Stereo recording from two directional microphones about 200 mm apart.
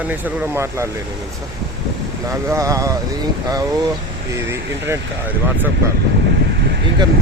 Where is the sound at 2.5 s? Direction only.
15° right (ahead or behind).